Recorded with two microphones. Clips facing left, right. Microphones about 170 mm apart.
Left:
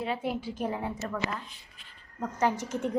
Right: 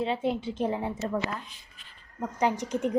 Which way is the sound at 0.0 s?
25° right (ahead or behind).